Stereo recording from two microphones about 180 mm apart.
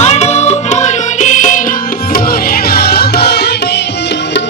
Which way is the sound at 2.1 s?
55° left (ahead or behind).